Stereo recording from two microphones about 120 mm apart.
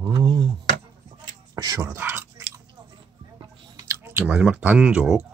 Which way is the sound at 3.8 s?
20° right (ahead or behind).